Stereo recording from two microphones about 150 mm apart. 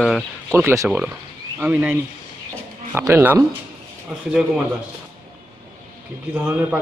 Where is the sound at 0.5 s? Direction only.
20° right (ahead or behind).